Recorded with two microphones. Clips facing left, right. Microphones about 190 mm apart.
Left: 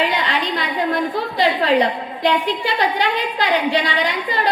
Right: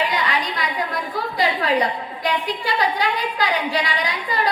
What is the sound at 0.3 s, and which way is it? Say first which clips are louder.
A woman's voice: left 2 dB; 25° left (ahead or behind).